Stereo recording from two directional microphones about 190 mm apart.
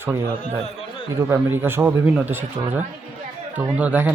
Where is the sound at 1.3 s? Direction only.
10° right (ahead or behind).